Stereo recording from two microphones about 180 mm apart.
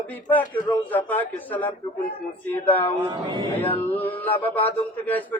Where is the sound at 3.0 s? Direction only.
25° right (ahead or behind).